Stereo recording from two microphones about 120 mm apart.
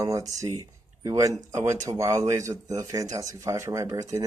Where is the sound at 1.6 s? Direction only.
25° right (ahead or behind).